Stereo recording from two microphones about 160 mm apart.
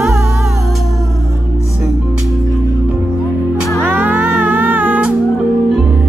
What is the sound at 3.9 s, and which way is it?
Music, 10° right (ahead or behind).